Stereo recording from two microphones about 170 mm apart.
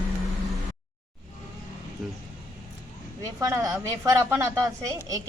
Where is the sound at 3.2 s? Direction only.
20° right (ahead or behind).